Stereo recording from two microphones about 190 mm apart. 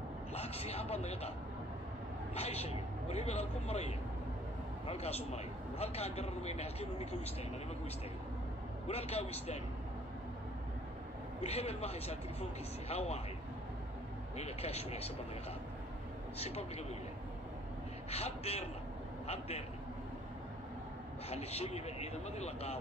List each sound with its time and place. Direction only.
0.3 s a man's voice: 35° left (ahead or behind)
2.3 s a man's voice: 35° left (ahead or behind)
8.8 s a man's voice: 35° left (ahead or behind)
11.4 s a man's voice: 35° left (ahead or behind)
14.3 s a man's voice: 35° left (ahead or behind)
16.3 s a man's voice: 35° left (ahead or behind)
18.1 s a man's voice: 35° left (ahead or behind)
21.3 s a man's voice: 35° left (ahead or behind)